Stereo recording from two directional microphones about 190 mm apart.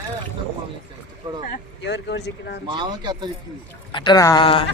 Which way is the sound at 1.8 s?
65° left (ahead or behind).